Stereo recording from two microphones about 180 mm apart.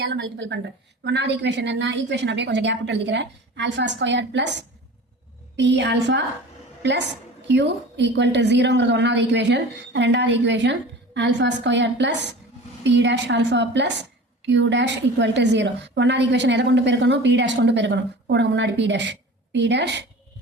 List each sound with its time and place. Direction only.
0.0 s a woman's voice: 80° right
1.0 s a woman's voice: 75° right (ahead or behind)